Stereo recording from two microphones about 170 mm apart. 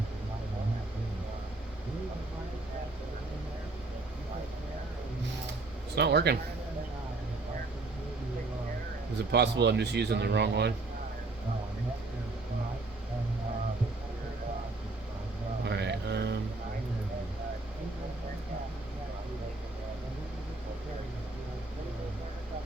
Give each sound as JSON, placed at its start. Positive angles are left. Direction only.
{"t": 6.0, "sound": "a man's voice", "side_deg": -75}
{"t": 9.3, "sound": "speech", "side_deg": -80}
{"t": 15.6, "sound": "a sound", "side_deg": -80}